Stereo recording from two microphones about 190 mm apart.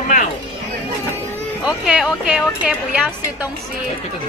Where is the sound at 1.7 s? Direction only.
5° right (ahead or behind).